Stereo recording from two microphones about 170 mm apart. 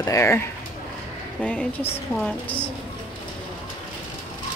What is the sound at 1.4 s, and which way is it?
A woman's voice, 5° left (ahead or behind).